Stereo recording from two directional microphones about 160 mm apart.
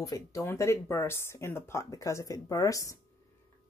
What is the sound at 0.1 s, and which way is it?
Speech, 20° left (ahead or behind).